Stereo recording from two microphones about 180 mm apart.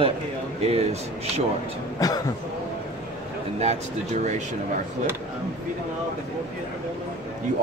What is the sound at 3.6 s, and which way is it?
Speech, 40° right (ahead or behind).